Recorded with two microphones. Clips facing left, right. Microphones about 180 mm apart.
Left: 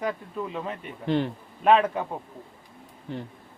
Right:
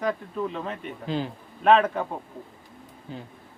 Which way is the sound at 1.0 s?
65° left (ahead or behind).